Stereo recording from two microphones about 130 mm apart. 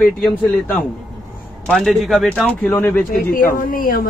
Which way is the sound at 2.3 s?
10° left (ahead or behind).